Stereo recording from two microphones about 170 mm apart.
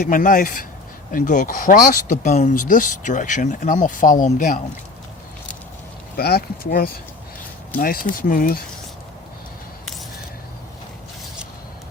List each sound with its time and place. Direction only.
0.0 s speech: 55° left (ahead or behind)
6.1 s speech: 65° left (ahead or behind)